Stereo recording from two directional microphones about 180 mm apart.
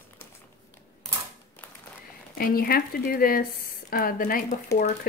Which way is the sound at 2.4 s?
55° left (ahead or behind).